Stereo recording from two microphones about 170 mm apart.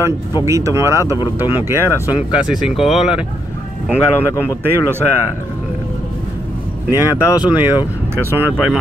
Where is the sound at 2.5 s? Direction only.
Centre (ahead or behind).